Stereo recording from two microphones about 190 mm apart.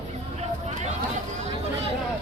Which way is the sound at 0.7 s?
40° right (ahead or behind).